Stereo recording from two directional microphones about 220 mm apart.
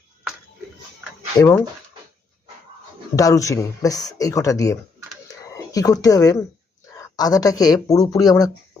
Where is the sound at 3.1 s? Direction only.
15° left (ahead or behind).